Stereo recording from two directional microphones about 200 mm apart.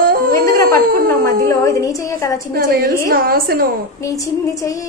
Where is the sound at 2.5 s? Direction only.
50° right (ahead or behind).